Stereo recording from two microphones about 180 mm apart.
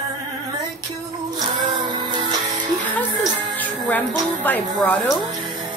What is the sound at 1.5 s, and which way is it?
Music, 25° right (ahead or behind).